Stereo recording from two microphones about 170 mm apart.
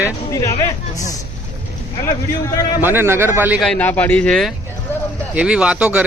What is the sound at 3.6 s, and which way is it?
Speech, 10° left (ahead or behind).